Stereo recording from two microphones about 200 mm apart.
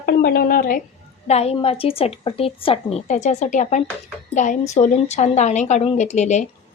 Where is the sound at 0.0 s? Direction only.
50° left (ahead or behind).